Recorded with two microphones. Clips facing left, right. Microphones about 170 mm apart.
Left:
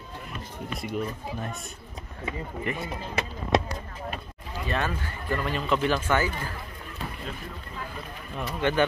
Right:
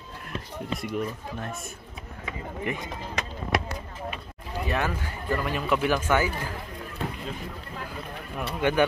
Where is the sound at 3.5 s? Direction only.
20° left (ahead or behind).